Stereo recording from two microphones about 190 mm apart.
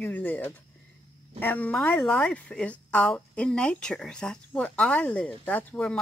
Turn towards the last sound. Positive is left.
turn(degrees=5)  # may be behind; listen again after turning